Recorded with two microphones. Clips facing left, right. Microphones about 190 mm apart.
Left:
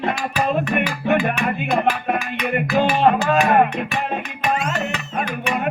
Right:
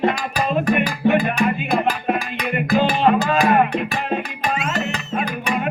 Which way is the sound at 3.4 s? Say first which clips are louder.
Even; 35° right (ahead or behind).